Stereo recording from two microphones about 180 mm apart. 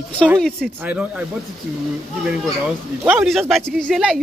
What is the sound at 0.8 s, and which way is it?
Speech, 10° right (ahead or behind).